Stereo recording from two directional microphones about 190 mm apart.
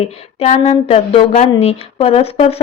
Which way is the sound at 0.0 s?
35° left (ahead or behind).